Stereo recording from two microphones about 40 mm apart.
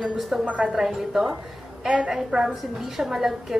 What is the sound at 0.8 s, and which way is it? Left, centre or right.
A woman's voice, centre.